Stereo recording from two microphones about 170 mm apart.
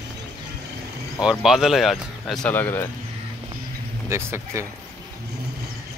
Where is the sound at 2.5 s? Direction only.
10° left (ahead or behind).